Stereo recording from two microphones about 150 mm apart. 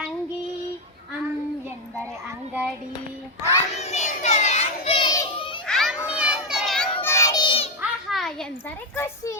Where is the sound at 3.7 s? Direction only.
45° left (ahead or behind).